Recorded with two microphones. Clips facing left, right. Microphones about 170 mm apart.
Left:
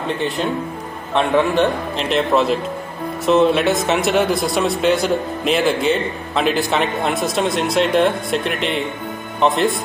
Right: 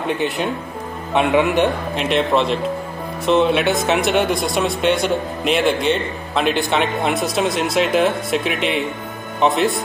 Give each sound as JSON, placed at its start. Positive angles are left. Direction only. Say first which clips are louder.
{"t": 1.1, "sound": "a man's voice", "louder": "even", "side_deg": -15}
{"t": 2.0, "sound": "speech", "louder": "even", "side_deg": 0}